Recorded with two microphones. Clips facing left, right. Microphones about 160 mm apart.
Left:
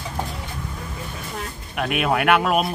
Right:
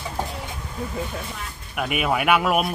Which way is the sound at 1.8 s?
5° right (ahead or behind).